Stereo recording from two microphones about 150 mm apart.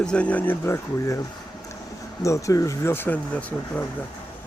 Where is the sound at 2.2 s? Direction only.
20° left (ahead or behind).